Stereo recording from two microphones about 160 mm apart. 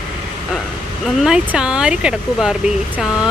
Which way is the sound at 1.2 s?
5° right (ahead or behind).